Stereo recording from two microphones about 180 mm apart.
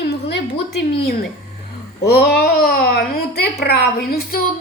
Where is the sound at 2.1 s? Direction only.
60° left (ahead or behind).